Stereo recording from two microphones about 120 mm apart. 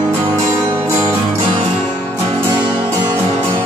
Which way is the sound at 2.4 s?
20° right (ahead or behind).